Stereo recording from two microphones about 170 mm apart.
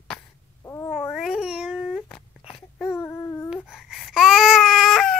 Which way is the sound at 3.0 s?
15° left (ahead or behind).